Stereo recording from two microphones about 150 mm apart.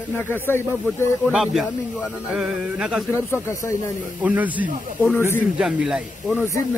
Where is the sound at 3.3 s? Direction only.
15° left (ahead or behind).